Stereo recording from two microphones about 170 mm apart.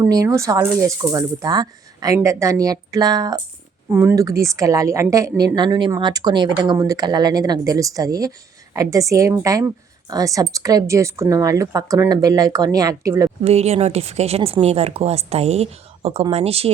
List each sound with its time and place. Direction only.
0.0 s a woman's voice: 20° right (ahead or behind)
3.8 s a woman's voice: 15° right (ahead or behind)
5.5 s a woman's voice: 25° right (ahead or behind)
13.4 s speech: 40° right (ahead or behind)